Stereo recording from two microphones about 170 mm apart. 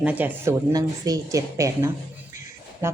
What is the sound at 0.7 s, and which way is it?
A woman's voice, 20° right (ahead or behind).